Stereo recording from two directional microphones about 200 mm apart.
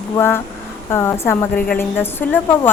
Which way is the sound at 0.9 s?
15° left (ahead or behind).